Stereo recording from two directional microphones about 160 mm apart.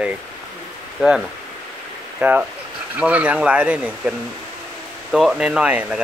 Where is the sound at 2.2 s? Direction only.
5° right (ahead or behind).